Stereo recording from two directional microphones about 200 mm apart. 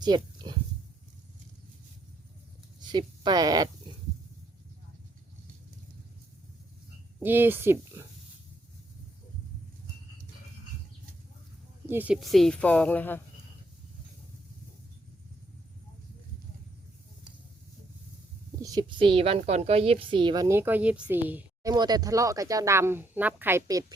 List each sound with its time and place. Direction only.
0.0 s speech: 20° right (ahead or behind)
2.8 s speech: 20° right (ahead or behind)
7.2 s a woman's voice: 10° right (ahead or behind)
11.9 s speech: 10° right (ahead or behind); by 13.2 s 10° left (ahead or behind)
18.6 s a woman's voice: 20° right (ahead or behind)